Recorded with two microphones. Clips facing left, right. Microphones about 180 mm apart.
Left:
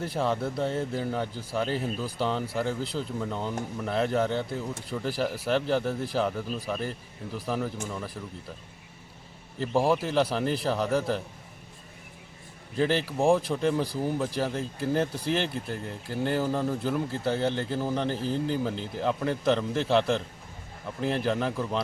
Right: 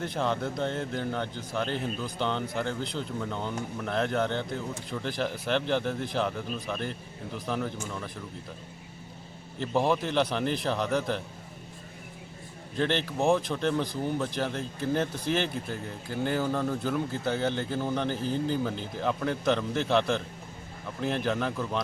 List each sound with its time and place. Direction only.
0.0 s speech: 5° left (ahead or behind)
9.6 s speech: 5° left (ahead or behind)
12.7 s speech: 5° left (ahead or behind)